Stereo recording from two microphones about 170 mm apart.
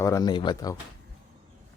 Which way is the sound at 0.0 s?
20° left (ahead or behind).